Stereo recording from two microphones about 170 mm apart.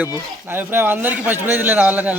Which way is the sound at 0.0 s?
10° right (ahead or behind).